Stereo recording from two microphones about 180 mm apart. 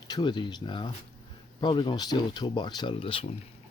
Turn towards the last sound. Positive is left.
turn(degrees=30)  # may be behind; listen again after turning